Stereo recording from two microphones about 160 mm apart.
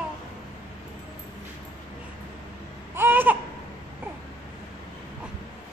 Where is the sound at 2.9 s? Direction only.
15° right (ahead or behind).